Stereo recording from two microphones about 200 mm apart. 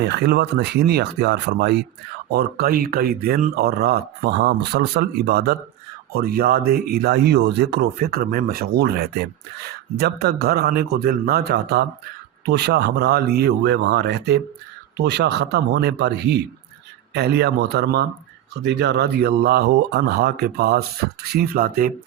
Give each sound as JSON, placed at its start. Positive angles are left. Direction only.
{"t": 0.0, "sound": "speech", "side_deg": -55}